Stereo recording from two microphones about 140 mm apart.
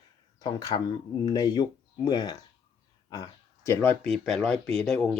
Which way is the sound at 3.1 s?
30° left (ahead or behind).